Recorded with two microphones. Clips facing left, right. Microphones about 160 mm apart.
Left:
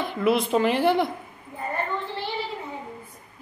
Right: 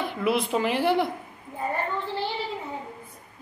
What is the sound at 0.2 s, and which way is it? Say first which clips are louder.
Speech: left 4 dB; 10° right (ahead or behind).